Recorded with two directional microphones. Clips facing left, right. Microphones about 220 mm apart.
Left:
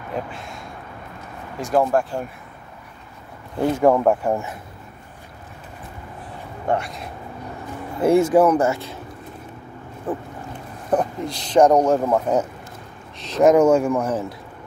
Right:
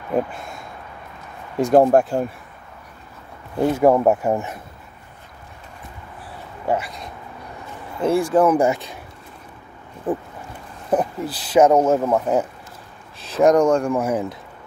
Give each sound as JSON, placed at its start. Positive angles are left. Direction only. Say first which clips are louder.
{"t": 1.7, "sound": "speech", "louder": "right 5 dB", "side_deg": -40}
{"t": 3.5, "sound": "speech", "louder": "right 1 dB", "side_deg": -10}
{"t": 6.7, "sound": "speech", "louder": "even", "side_deg": 0}
{"t": 8.0, "sound": "speech", "louder": "left 3 dB", "side_deg": 20}
{"t": 8.5, "sound": "speech", "louder": "right 2 dB", "side_deg": -15}
{"t": 10.1, "sound": "speech", "louder": "right 3 dB", "side_deg": -15}
{"t": 13.9, "sound": "speech", "louder": "right 1 dB", "side_deg": -10}